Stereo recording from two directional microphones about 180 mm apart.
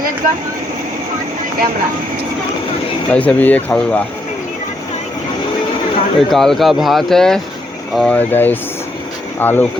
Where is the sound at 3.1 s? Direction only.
10° left (ahead or behind).